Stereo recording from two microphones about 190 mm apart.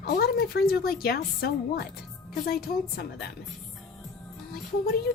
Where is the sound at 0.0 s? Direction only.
55° left (ahead or behind).